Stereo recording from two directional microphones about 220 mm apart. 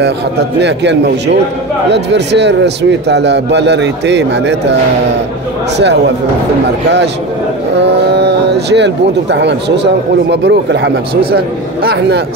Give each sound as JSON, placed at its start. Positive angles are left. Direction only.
{"t": 0.6, "sound": "speech", "side_deg": -50}
{"t": 7.7, "sound": "speech", "side_deg": -50}